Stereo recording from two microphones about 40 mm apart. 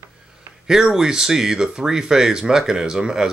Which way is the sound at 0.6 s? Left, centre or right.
Centre.